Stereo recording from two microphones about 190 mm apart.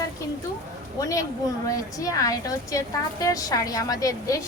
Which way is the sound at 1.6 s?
20° left (ahead or behind).